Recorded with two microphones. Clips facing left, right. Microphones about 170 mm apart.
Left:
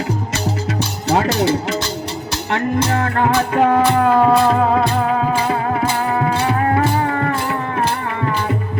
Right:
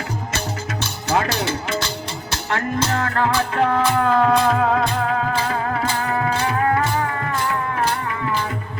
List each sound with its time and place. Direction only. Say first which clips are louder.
1.0 s music: left 5 dB; 35° left (ahead or behind)
2.5 s music: left 4 dB; 20° left (ahead or behind)
5.5 s music: left 4 dB; 25° left (ahead or behind)